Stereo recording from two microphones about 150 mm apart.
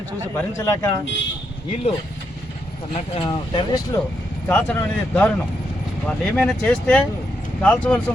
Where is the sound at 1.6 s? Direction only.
40° left (ahead or behind).